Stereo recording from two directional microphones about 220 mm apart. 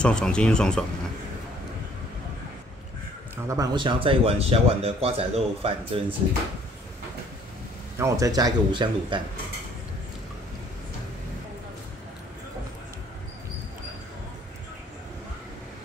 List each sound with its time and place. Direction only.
0.0 s speech: 5° left (ahead or behind)
3.4 s speech: 15° right (ahead or behind)
8.0 s speech: 15° right (ahead or behind)